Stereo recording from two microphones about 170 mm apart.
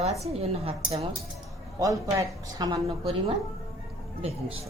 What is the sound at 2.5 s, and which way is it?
Speech, 20° right (ahead or behind).